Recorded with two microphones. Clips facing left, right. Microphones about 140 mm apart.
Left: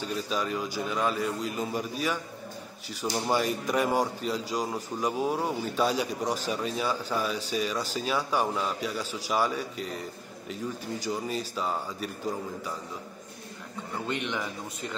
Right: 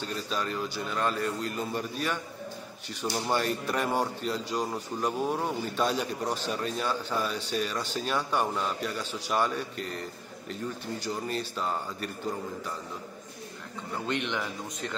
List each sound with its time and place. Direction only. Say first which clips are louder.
0.0 s a man's voice: left 2 dB; 5° left (ahead or behind)
11.1 s speech: left 1 dB; 5° left (ahead or behind)
14.0 s a man's voice: right 1 dB; 5° left (ahead or behind)